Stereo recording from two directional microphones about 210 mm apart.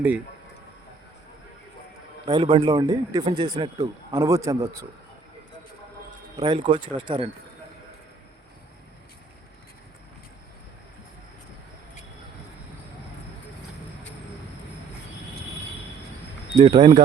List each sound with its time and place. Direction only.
2.2 s a man's voice: 25° right (ahead or behind)
6.3 s a man's voice: 20° right (ahead or behind)
16.6 s a man's voice: 25° right (ahead or behind)